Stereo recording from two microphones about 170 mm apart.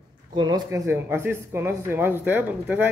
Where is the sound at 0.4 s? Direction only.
25° right (ahead or behind).